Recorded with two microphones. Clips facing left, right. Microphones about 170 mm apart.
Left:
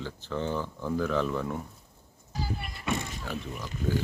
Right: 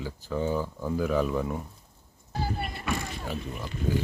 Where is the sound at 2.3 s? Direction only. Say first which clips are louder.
Right 4 dB; 55° right (ahead or behind).